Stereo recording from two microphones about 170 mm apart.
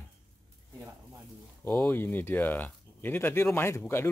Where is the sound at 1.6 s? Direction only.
5° left (ahead or behind).